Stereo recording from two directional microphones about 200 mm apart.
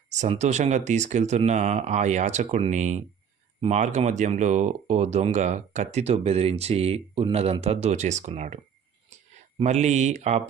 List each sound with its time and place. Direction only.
0.2 s speech: 35° right (ahead or behind)
9.6 s speech: 35° right (ahead or behind)